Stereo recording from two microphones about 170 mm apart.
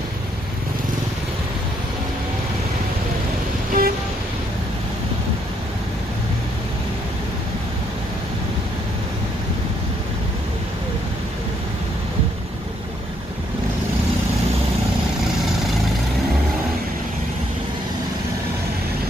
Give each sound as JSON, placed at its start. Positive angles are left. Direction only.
{"t": 3.8, "sound": "vehicle", "side_deg": -60}